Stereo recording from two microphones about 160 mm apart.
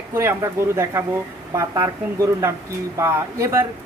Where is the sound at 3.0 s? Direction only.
20° right (ahead or behind).